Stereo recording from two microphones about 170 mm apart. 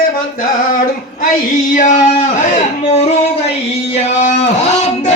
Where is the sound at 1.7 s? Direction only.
50° left (ahead or behind).